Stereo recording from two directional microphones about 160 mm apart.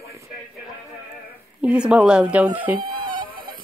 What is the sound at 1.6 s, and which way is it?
Speech, 5° right (ahead or behind).